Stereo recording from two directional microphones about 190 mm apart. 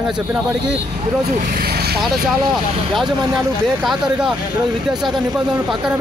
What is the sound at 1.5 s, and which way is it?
Vehicle, 55° right (ahead or behind).